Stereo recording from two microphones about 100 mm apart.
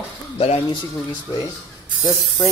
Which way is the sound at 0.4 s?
80° left.